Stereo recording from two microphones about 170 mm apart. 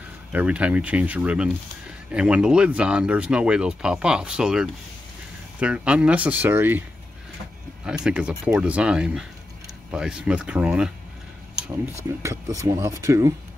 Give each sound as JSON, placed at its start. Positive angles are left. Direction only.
{"t": 0.3, "sound": "speech", "side_deg": -10}
{"t": 7.8, "sound": "speech", "side_deg": -5}
{"t": 12.0, "sound": "speech", "side_deg": -15}